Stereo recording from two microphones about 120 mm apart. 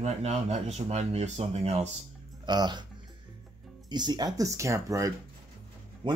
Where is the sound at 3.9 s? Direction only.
40° right (ahead or behind).